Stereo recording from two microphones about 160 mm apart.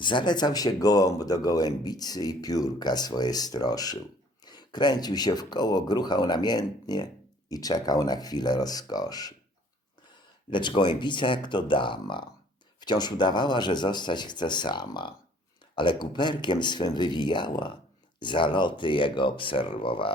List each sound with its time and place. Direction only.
0.0 s speech: 30° left (ahead or behind)
10.5 s speech: 30° left (ahead or behind)